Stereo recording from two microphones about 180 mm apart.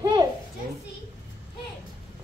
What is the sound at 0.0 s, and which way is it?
Children playing, 25° right (ahead or behind).